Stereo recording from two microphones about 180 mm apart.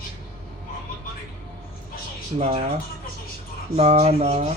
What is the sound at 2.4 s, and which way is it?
Speech, 40° right (ahead or behind).